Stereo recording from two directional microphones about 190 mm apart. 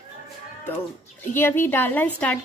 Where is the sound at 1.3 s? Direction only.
10° left (ahead or behind).